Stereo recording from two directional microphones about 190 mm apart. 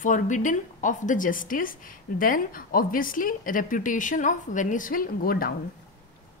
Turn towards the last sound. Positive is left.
turn(degrees=50)  # may be behind; listen again after turning